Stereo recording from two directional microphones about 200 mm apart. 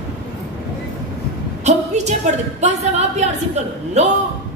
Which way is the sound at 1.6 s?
35° right (ahead or behind).